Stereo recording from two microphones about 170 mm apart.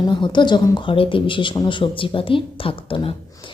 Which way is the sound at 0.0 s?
30° left (ahead or behind).